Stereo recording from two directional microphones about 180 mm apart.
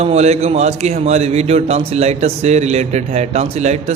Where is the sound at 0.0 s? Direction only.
35° right (ahead or behind).